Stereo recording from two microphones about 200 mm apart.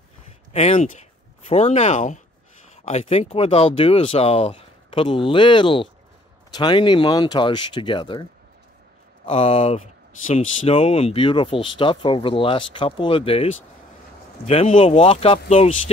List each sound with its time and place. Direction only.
0.5 s speech: 30° left (ahead or behind)